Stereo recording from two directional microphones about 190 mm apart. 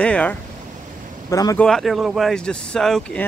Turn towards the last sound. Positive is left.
turn(degrees=5)  # may be behind; listen again after turning